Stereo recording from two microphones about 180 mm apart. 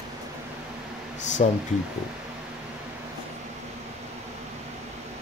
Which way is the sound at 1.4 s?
40° left (ahead or behind).